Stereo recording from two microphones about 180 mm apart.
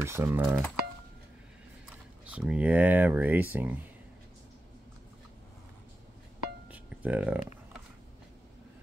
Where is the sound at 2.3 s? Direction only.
5° right (ahead or behind).